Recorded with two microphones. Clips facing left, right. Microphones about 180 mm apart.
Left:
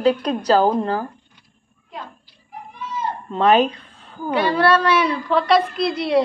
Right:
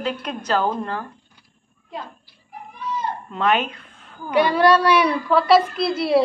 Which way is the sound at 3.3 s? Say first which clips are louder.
Left 6 dB; 35° left (ahead or behind).